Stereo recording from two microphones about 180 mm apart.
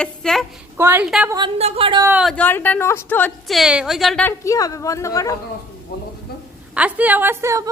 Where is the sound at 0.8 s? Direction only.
10° right (ahead or behind).